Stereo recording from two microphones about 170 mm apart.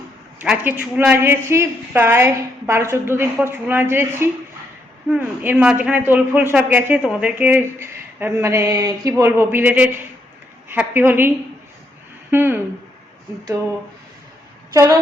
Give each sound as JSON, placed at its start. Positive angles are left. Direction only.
{"t": 0.3, "sound": "a man's voice", "side_deg": -10}
{"t": 12.3, "sound": "a man's voice", "side_deg": -10}
{"t": 14.7, "sound": "speech", "side_deg": -20}